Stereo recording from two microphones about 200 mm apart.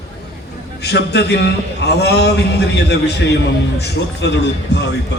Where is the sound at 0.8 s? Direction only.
55° left (ahead or behind).